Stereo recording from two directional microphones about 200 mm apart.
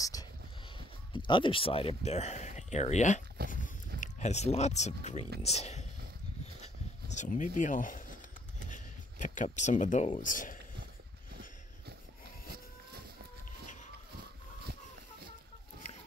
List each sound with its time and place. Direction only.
0.0 s speech: 20° left (ahead or behind); by 3.2 s 35° left (ahead or behind)
3.4 s speech: 50° right (ahead or behind)
4.0 s speech: 35° left (ahead or behind)
7.2 s speech: 40° left (ahead or behind)